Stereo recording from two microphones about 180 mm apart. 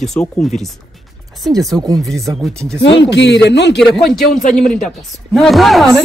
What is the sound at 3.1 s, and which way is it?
Speech, 75° left (ahead or behind).